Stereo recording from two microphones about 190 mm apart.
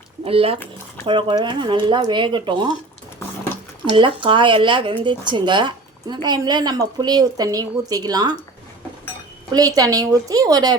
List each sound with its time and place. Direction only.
0.3 s speech: 30° right (ahead or behind)
3.9 s speech: 25° right (ahead or behind)
9.5 s speech: 20° right (ahead or behind)